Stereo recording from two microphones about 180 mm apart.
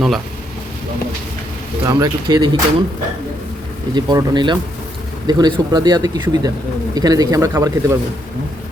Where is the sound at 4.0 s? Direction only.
25° right (ahead or behind).